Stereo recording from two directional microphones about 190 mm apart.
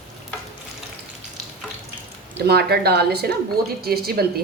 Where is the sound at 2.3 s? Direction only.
60° right (ahead or behind).